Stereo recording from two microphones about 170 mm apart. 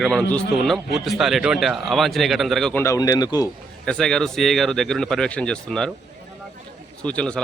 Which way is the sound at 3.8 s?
5° left (ahead or behind).